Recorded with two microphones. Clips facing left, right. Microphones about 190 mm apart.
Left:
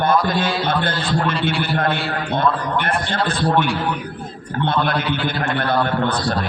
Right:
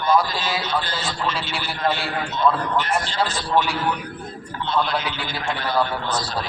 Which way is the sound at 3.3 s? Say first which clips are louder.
Left 6 dB; 55° left (ahead or behind).